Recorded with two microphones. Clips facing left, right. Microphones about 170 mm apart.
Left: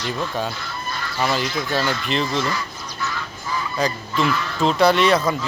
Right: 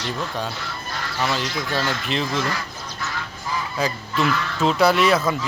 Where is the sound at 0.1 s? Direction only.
Centre (ahead or behind).